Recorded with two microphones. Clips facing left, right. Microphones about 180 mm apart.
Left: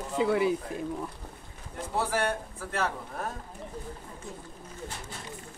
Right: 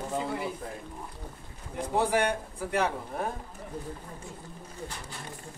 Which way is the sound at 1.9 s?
15° right (ahead or behind).